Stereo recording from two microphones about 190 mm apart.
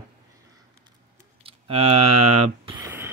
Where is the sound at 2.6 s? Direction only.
20° right (ahead or behind).